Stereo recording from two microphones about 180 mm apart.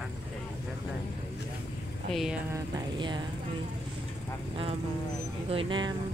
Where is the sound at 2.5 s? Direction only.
25° right (ahead or behind).